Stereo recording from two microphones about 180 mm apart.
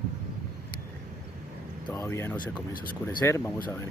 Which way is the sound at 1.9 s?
15° left (ahead or behind).